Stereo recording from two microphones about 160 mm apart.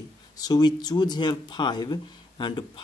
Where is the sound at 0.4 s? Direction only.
25° left (ahead or behind).